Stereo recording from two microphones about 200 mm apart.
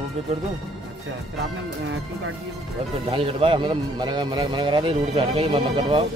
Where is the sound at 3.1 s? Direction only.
25° right (ahead or behind).